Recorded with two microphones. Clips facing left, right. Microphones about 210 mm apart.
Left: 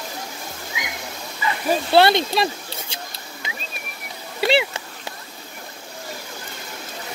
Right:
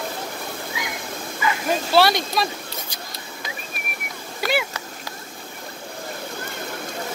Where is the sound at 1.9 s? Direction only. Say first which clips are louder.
Left 3 dB; 25° left (ahead or behind).